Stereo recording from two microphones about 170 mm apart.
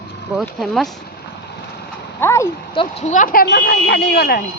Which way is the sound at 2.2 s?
15° left (ahead or behind).